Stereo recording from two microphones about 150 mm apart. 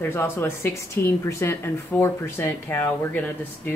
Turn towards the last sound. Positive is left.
turn(degrees=15)  # may be behind; listen again after turning